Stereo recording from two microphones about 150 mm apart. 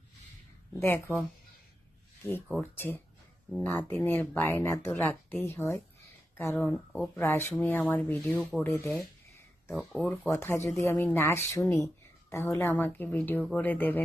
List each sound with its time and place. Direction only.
0.8 s speech: 15° left (ahead or behind)
2.6 s speech: 15° left (ahead or behind)
6.6 s speech: 5° left (ahead or behind)
7.2 s speech: 15° left (ahead or behind)